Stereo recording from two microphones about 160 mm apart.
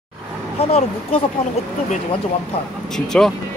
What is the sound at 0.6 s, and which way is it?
Speech, 40° left (ahead or behind).